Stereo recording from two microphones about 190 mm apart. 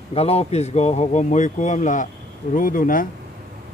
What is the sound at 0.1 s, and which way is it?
Speech, 35° left (ahead or behind).